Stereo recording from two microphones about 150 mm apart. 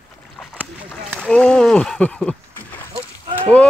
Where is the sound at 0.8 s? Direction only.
5° left (ahead or behind).